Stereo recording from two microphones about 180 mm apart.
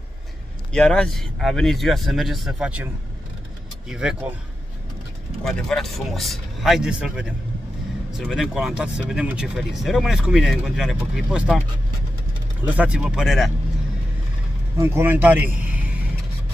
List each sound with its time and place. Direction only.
0.7 s speech: 5° left (ahead or behind)
3.9 s speech: 5° right (ahead or behind)
5.4 s speech: centre (ahead or behind)
12.6 s speech: 5° right (ahead or behind)
14.8 s speech: 15° right (ahead or behind)